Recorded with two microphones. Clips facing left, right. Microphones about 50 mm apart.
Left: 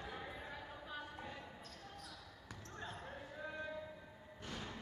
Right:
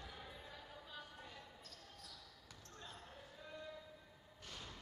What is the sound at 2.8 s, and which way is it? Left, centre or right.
Basketball bounce, left.